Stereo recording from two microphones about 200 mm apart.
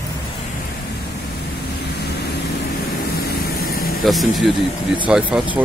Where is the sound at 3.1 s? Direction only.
50° left (ahead or behind).